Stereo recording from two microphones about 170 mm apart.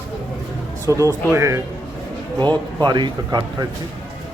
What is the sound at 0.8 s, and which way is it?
Speech, 20° right (ahead or behind).